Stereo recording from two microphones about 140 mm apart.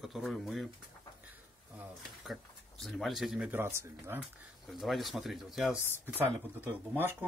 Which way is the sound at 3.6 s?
15° right (ahead or behind).